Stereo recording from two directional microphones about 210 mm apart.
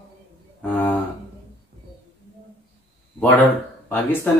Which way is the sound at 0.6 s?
10° left (ahead or behind).